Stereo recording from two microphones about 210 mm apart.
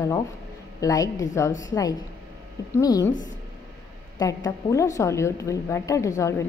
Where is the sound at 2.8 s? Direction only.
15° left (ahead or behind).